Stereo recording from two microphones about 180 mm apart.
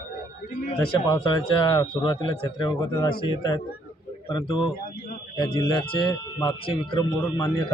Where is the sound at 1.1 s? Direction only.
25° left (ahead or behind).